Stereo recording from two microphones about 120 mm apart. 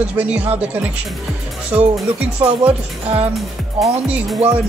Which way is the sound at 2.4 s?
25° right (ahead or behind).